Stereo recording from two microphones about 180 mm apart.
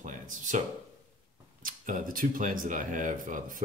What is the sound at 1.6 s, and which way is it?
Speech, 50° right (ahead or behind).